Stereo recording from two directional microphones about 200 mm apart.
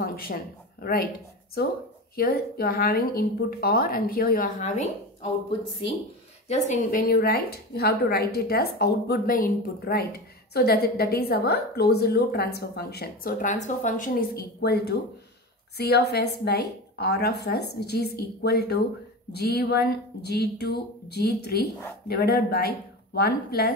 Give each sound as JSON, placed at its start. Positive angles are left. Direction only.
{"t": 0.0, "sound": "speech", "side_deg": 50}
{"t": 2.1, "sound": "a woman's voice", "side_deg": 50}
{"t": 6.5, "sound": "a woman's voice", "side_deg": 40}